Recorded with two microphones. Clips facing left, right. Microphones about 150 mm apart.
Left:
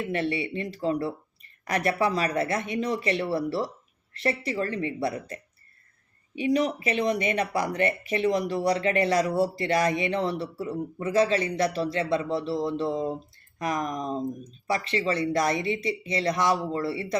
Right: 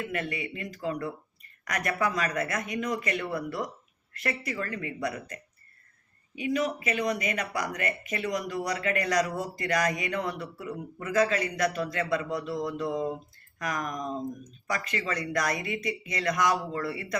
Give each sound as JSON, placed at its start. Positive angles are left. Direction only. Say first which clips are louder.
{"t": 0.0, "sound": "speech", "louder": "left 5 dB", "side_deg": 30}